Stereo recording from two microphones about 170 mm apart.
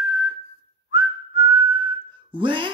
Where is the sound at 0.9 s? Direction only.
30° right (ahead or behind).